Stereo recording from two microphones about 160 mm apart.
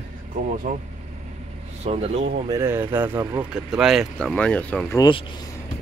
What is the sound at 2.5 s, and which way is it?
Speech, 15° right (ahead or behind).